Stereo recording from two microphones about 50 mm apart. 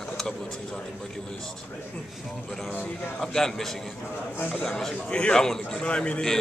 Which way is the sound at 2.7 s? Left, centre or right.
Left.